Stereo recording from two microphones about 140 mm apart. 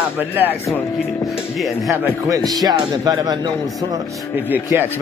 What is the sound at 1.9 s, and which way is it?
Speech, 25° right (ahead or behind).